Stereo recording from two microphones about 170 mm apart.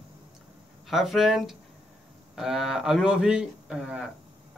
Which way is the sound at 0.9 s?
Centre (ahead or behind).